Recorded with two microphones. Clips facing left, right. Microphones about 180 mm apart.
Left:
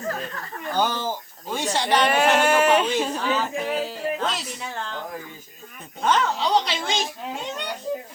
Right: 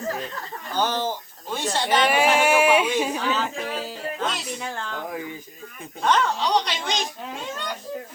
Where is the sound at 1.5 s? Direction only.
15° left (ahead or behind).